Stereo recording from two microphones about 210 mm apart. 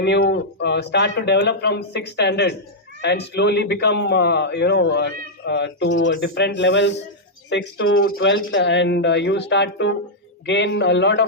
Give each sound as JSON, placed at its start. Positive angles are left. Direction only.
{"t": 0.0, "sound": "speech", "side_deg": 55}
{"t": 7.5, "sound": "speech", "side_deg": 70}